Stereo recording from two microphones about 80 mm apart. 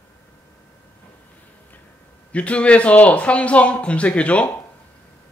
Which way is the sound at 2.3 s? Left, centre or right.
Centre.